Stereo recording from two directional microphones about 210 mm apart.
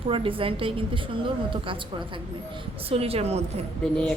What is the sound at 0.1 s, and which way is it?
Speech, 25° right (ahead or behind).